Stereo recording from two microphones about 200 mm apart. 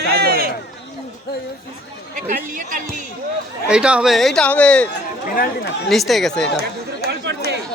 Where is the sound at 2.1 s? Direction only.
40° right (ahead or behind).